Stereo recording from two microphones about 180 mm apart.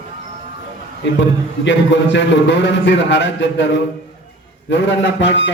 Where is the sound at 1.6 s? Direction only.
85° left.